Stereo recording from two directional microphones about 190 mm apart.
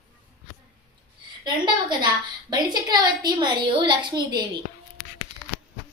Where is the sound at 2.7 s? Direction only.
20° right (ahead or behind).